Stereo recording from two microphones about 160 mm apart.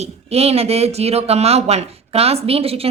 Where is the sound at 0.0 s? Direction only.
40° right (ahead or behind).